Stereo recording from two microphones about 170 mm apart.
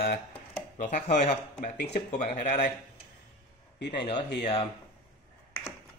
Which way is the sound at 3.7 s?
90° left.